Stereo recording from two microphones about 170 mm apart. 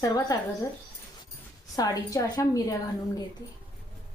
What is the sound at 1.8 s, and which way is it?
Speech, 20° left (ahead or behind).